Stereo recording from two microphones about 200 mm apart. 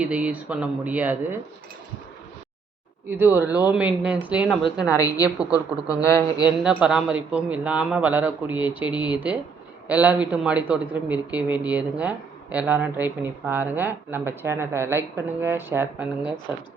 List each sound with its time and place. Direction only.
0.0 s a man's voice: 5° right (ahead or behind)
3.1 s a man's voice: 10° right (ahead or behind)
4.6 s a woman's voice: 20° left (ahead or behind)
6.6 s a man's voice: 5° right (ahead or behind)